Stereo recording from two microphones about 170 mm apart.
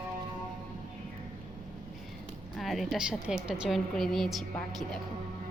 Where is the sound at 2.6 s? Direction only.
Centre (ahead or behind).